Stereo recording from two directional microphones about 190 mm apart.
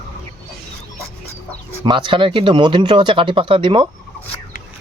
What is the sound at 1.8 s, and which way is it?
Speech, 25° right (ahead or behind).